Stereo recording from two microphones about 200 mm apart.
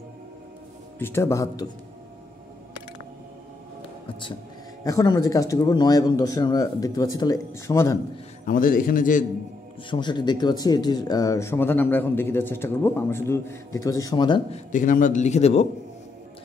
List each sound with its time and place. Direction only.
0.9 s speech: 10° left (ahead or behind)
4.8 s speech: 15° left (ahead or behind)
8.5 s a man's voice: 45° left (ahead or behind)
9.8 s speech: 20° left (ahead or behind)
14.7 s a man's voice: 40° left (ahead or behind)